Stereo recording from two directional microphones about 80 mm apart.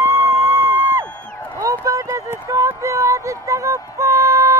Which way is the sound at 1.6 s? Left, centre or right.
Right.